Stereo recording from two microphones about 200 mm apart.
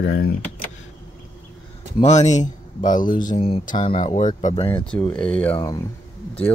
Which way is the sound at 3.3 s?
30° left (ahead or behind).